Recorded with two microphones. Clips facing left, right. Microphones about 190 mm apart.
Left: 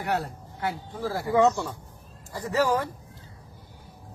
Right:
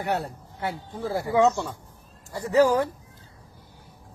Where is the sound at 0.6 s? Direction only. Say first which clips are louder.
Even; 20° right (ahead or behind).